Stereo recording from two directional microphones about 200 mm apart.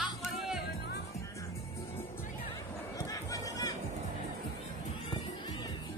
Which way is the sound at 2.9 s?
15° left (ahead or behind).